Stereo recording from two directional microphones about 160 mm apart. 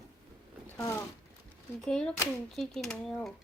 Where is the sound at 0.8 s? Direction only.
15° left (ahead or behind).